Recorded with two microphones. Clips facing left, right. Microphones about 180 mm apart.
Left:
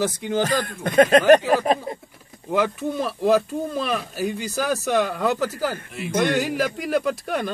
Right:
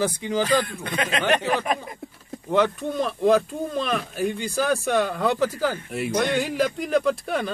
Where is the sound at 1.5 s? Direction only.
35° left (ahead or behind).